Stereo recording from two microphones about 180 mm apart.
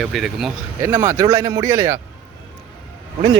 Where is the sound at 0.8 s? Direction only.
15° right (ahead or behind).